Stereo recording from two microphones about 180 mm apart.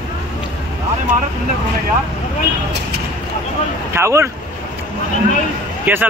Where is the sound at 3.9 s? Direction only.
15° right (ahead or behind).